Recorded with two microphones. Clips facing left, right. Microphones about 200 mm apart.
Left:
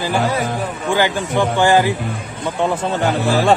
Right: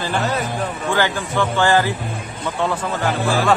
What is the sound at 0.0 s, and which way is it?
Speech, 10° left (ahead or behind).